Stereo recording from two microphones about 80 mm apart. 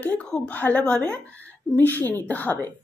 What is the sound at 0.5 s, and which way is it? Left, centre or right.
Speech, centre.